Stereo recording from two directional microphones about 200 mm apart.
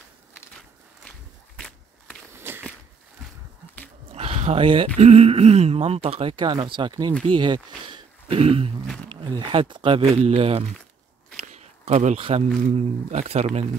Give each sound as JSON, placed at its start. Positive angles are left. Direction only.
{"t": 2.3, "sound": "walk", "side_deg": -10}
{"t": 4.1, "sound": "a sound", "side_deg": -30}
{"t": 4.9, "sound": "speech", "side_deg": -30}
{"t": 8.8, "sound": "walk", "side_deg": 5}
{"t": 9.1, "sound": "speech", "side_deg": -25}
{"t": 11.4, "sound": "a sound", "side_deg": -35}
{"t": 12.6, "sound": "speech", "side_deg": -35}